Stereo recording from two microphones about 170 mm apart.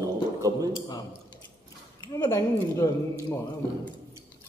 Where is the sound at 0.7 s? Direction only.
25° left (ahead or behind).